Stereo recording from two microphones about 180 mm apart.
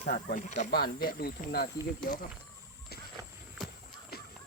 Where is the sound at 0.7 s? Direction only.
60° left (ahead or behind).